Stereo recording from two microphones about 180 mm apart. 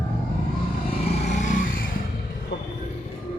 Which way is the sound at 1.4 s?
45° left (ahead or behind).